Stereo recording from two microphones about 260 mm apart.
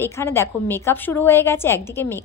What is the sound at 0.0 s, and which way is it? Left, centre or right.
A woman's voice, centre.